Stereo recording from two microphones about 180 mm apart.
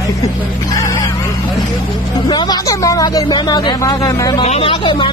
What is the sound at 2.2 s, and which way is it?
Speech, 25° left (ahead or behind).